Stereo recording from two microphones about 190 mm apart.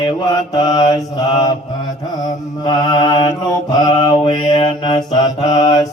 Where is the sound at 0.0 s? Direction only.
20° left (ahead or behind).